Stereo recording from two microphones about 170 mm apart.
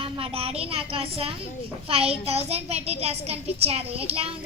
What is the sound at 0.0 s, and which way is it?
A child's voice, 35° right (ahead or behind).